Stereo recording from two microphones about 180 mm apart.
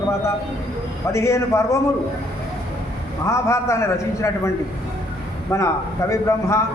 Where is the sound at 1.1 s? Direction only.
15° left (ahead or behind).